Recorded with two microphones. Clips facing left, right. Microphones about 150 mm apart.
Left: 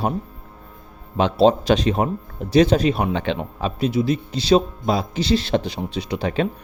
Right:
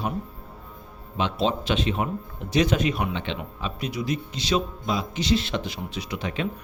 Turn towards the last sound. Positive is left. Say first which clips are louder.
# left 7 dB
turn(degrees=35)  # may be behind; listen again after turning